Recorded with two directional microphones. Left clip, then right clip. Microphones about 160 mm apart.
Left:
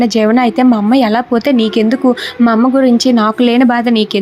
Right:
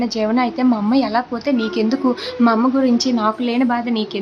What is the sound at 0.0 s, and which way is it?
Speech, 35° left (ahead or behind).